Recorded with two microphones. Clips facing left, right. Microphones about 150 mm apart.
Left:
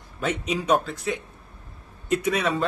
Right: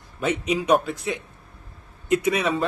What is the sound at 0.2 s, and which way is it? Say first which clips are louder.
Speech: right 3 dB; 5° right (ahead or behind).